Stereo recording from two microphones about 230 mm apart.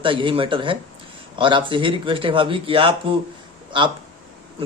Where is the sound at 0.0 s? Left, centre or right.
Right.